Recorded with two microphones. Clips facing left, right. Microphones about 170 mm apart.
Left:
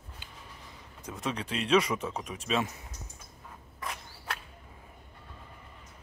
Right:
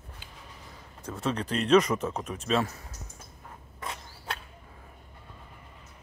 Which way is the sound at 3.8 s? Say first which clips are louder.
Right 1 dB; 25° right (ahead or behind).